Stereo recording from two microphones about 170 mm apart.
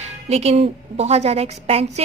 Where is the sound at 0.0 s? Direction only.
40° right (ahead or behind).